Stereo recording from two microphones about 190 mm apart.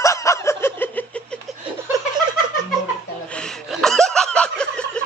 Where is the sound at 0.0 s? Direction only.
15° left (ahead or behind).